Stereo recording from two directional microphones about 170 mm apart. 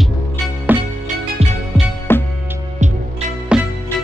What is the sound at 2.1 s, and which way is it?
Music, 15° left (ahead or behind).